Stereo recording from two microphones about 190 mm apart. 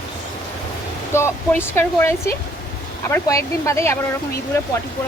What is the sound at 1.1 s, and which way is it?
Speech, 10° left (ahead or behind).